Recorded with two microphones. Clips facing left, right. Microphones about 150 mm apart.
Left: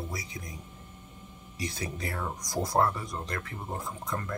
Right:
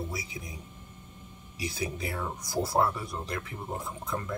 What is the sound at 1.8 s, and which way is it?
Speech, 20° right (ahead or behind).